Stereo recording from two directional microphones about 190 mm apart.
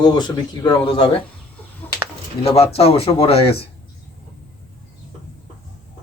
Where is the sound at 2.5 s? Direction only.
30° left (ahead or behind).